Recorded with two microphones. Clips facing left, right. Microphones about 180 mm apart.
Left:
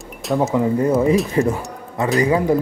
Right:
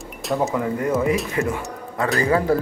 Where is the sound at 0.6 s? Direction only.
25° left (ahead or behind).